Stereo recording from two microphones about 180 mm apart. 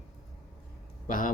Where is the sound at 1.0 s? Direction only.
50° left (ahead or behind).